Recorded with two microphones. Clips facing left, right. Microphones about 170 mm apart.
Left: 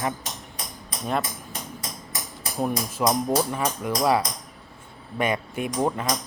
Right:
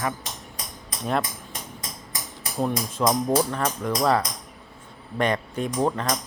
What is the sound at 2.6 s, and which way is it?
Speech, 10° left (ahead or behind).